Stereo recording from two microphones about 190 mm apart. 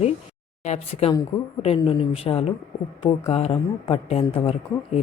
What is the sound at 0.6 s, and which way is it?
Speech, 35° left (ahead or behind).